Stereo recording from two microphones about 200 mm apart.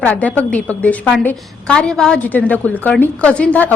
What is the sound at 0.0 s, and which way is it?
A woman's voice, 5° left (ahead or behind).